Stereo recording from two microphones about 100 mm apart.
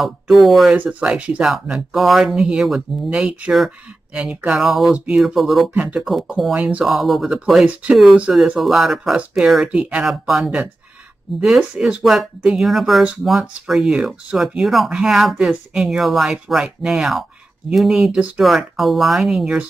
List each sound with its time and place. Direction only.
0.0 s speech: centre (ahead or behind)
0.7 s speech: 15° right (ahead or behind)
6.5 s speech: 10° right (ahead or behind)
6.9 s speech: centre (ahead or behind)